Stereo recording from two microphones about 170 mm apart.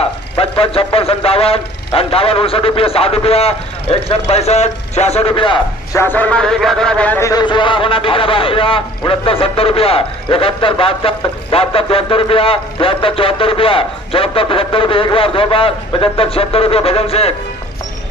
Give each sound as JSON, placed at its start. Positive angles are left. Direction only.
{"t": 0.4, "sound": "a man's voice", "side_deg": 35}
{"t": 5.9, "sound": "a man's voice", "side_deg": 10}